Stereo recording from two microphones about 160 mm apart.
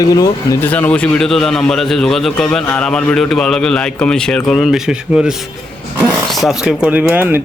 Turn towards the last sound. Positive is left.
turn(degrees=-10)  # may be behind; listen again after turning